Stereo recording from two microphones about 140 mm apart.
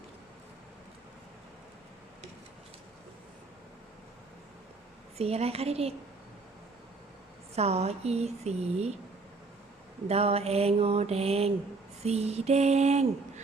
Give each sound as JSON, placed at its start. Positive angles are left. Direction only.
{"t": 5.1, "sound": "mantra", "side_deg": -45}
{"t": 7.5, "sound": "mantra", "side_deg": -50}
{"t": 10.1, "sound": "mantra", "side_deg": -45}